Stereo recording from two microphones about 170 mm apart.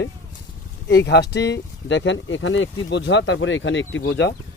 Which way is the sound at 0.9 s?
85° left.